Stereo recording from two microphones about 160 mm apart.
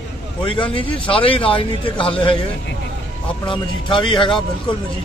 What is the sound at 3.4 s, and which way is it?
A man's voice, 30° left (ahead or behind).